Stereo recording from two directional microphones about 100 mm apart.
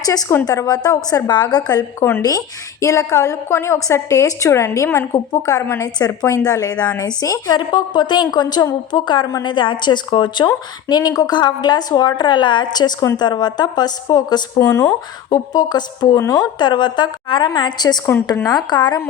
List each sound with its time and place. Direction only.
0.0 s a woman's voice: 40° left (ahead or behind)
2.0 s a woman's voice: 25° left (ahead or behind); by 14.4 s 45° left (ahead or behind)
14.6 s a woman's voice: 30° left (ahead or behind)
15.3 s a woman's voice: 40° left (ahead or behind)
16.6 s speech: 50° left (ahead or behind)